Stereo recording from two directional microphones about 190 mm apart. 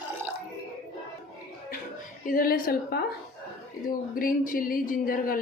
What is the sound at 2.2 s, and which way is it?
Speech, 50° left (ahead or behind).